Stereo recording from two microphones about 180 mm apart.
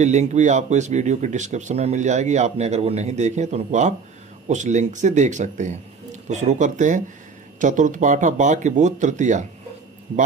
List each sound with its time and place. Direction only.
0.0 s a man's voice: 40° right (ahead or behind)